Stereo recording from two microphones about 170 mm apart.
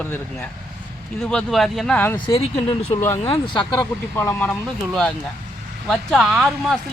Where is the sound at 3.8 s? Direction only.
10° left (ahead or behind).